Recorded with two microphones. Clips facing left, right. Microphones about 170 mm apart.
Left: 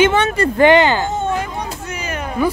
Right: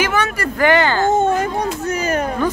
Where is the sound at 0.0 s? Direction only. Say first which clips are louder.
Left 5 dB; 25° left (ahead or behind).